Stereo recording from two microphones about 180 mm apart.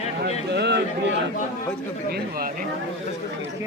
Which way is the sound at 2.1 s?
55° right (ahead or behind).